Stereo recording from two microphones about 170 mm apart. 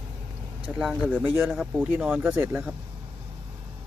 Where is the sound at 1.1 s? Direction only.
10° right (ahead or behind).